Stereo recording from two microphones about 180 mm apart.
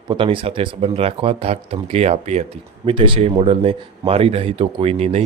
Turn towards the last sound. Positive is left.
turn(degrees=-35)  # may be behind; listen again after turning